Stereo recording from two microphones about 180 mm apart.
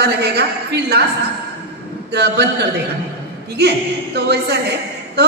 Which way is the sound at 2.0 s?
65° right (ahead or behind).